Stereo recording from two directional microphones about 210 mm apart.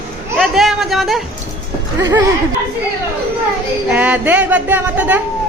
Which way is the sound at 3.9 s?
5° right (ahead or behind).